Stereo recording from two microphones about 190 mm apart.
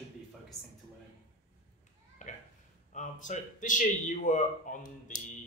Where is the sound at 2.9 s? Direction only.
40° left (ahead or behind).